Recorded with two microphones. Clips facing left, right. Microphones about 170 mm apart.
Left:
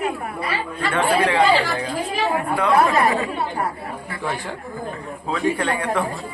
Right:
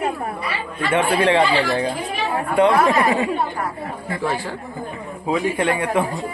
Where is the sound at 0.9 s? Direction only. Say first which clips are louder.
Right 2 dB; 30° right (ahead or behind).